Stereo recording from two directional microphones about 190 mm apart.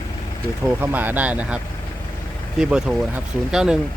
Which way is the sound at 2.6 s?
5° right (ahead or behind).